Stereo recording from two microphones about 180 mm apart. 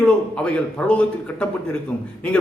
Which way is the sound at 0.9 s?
5° left (ahead or behind).